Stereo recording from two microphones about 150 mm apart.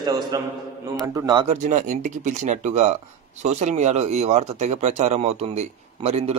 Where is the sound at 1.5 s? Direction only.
55° right (ahead or behind).